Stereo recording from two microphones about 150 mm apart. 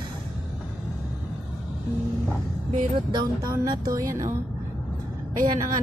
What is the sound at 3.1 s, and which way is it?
A woman's voice, 25° right (ahead or behind).